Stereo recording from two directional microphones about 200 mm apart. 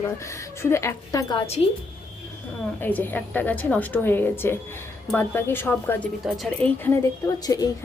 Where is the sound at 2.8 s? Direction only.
10° left (ahead or behind).